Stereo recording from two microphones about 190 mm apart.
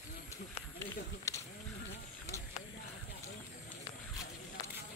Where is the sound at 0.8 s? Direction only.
15° left (ahead or behind).